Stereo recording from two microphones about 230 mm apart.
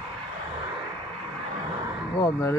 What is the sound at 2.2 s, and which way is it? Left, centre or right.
Speech, centre.